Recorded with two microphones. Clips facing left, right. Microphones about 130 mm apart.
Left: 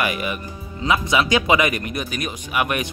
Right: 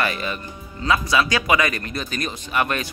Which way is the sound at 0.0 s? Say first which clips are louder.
Left 1 dB; 15° left (ahead or behind).